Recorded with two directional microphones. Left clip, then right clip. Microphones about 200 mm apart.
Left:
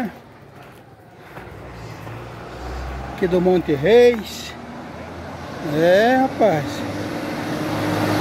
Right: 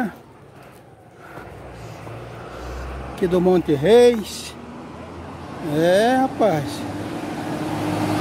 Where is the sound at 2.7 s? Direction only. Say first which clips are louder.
Left 2 dB; 55° left (ahead or behind).